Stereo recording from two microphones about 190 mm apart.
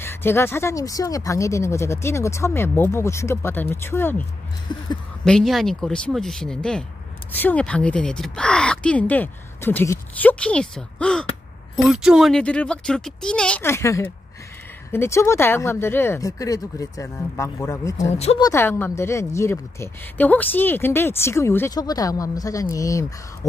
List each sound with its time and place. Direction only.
0.0 s speech: 10° left (ahead or behind)
4.7 s speech: 25° left (ahead or behind)
5.2 s speech: 5° left (ahead or behind)
18.1 s speech: 35° left (ahead or behind)
18.4 s speech: 15° left (ahead or behind)